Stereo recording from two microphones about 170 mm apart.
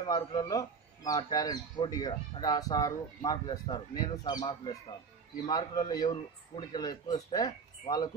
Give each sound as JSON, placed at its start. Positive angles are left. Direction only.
{"t": 0.0, "sound": "speech", "side_deg": 25}